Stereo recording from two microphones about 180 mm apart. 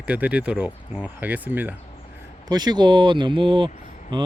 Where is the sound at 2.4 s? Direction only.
25° right (ahead or behind).